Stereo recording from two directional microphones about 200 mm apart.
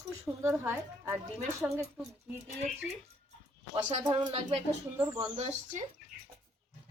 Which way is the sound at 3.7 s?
25° right (ahead or behind).